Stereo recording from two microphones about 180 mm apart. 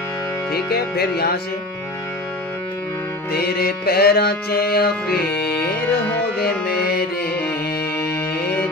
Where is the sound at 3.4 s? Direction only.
60° left (ahead or behind).